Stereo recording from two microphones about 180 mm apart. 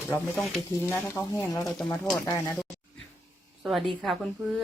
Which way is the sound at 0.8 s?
10° left (ahead or behind).